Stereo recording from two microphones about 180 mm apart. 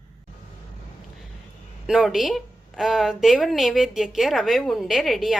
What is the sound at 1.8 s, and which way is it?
A woman's voice, centre (ahead or behind).